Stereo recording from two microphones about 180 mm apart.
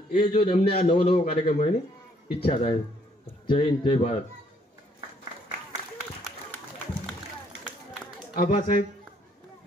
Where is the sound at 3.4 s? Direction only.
25° left (ahead or behind).